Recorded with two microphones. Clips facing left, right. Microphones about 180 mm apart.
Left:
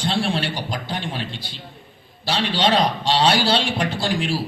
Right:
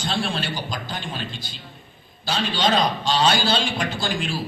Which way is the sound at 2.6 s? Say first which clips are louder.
Left 2 dB; 30° left (ahead or behind).